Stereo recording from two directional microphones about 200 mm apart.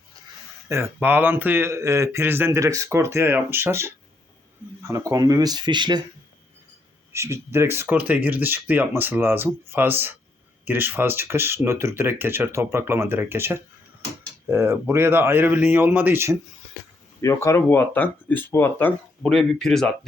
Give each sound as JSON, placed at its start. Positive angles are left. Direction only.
{"t": 0.7, "sound": "speech", "side_deg": -10}
{"t": 7.1, "sound": "speech", "side_deg": -15}
{"t": 17.2, "sound": "speech", "side_deg": 15}